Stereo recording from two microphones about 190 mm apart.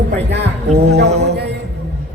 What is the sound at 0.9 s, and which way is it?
Speech, 60° right (ahead or behind).